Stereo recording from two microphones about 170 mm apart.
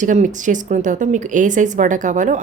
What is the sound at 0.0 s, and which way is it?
Speech, 45° right (ahead or behind).